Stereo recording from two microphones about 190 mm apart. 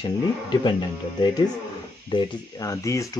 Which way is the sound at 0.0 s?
25° left (ahead or behind).